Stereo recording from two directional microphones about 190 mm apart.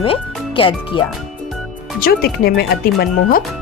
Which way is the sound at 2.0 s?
50° left (ahead or behind).